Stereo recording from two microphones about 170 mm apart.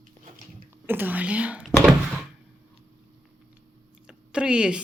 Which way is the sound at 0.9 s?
10° right (ahead or behind).